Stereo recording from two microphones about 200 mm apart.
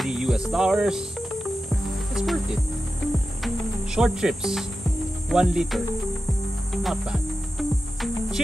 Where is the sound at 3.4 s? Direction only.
5° right (ahead or behind).